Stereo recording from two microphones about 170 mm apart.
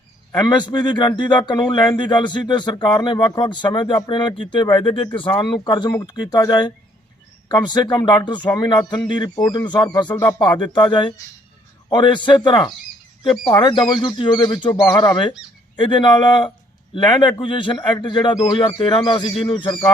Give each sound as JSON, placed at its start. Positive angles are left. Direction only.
{"t": 0.3, "sound": "speech", "side_deg": 25}